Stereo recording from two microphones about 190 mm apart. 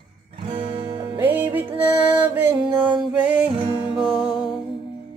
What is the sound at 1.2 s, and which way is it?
Music, 10° right (ahead or behind).